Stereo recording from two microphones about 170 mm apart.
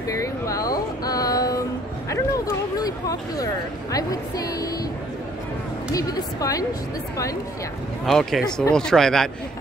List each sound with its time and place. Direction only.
0.2 s a sound: 20° left (ahead or behind)
3.9 s a woman's voice: 20° left (ahead or behind)
5.9 s a woman's voice: 20° left (ahead or behind)
8.0 s speech: centre (ahead or behind)